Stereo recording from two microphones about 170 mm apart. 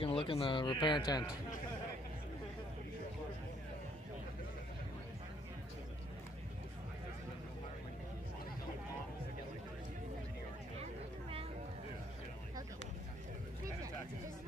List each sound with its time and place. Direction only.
0.0 s speech: 30° left (ahead or behind)